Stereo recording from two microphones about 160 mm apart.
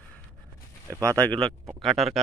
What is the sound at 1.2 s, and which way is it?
Speech, 5° left (ahead or behind).